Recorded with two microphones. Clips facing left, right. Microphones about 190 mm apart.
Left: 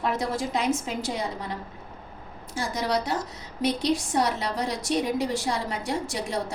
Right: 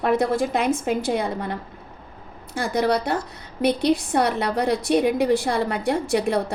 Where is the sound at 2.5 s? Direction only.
60° right (ahead or behind).